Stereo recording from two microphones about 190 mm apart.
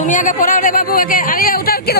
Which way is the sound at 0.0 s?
40° left (ahead or behind).